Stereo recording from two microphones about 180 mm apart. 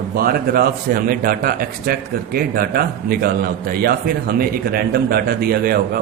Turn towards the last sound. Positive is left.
turn(degrees=-55)  # may be behind; listen again after turning